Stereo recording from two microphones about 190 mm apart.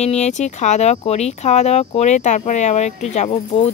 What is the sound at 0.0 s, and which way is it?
Speech, 35° left (ahead or behind).